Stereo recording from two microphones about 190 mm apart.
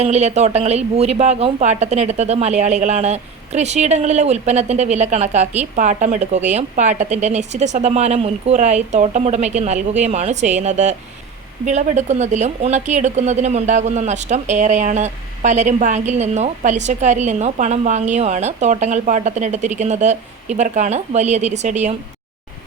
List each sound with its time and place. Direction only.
0.0 s a woman's voice: 35° right (ahead or behind)